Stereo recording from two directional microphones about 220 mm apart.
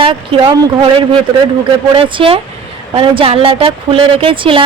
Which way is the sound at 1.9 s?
25° right (ahead or behind).